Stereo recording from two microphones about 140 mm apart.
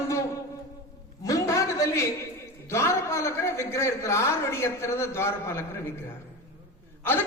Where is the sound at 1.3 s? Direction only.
25° left (ahead or behind).